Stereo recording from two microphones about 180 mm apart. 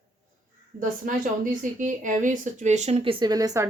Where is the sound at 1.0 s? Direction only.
45° right (ahead or behind).